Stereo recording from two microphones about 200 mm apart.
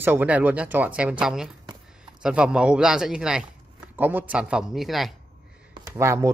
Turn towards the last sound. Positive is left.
turn(degrees=-15)  # may be behind; listen again after turning